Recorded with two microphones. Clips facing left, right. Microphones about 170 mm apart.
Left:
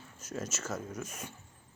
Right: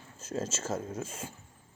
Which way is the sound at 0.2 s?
30° right (ahead or behind).